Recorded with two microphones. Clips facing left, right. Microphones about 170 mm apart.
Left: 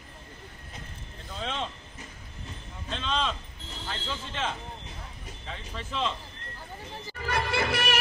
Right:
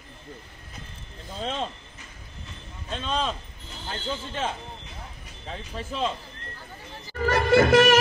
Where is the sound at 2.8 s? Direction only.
45° right (ahead or behind).